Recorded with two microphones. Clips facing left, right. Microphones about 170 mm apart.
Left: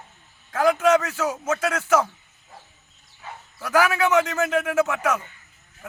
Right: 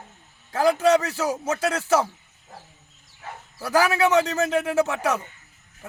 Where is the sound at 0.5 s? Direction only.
30° right (ahead or behind).